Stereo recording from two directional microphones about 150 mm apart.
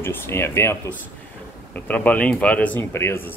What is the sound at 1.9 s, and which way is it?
Speech, 10° left (ahead or behind).